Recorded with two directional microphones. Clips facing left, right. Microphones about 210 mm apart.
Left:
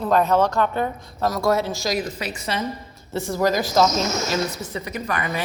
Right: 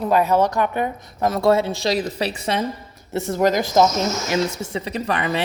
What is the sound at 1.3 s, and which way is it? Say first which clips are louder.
A woman's voice: right 4 dB; 30° right (ahead or behind).